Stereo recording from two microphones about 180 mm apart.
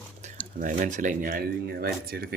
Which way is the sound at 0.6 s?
50° right (ahead or behind).